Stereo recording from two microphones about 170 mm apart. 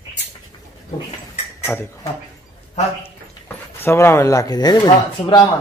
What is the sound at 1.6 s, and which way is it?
Speech, 10° left (ahead or behind).